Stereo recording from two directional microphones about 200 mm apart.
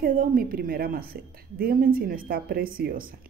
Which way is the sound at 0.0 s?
45° right (ahead or behind).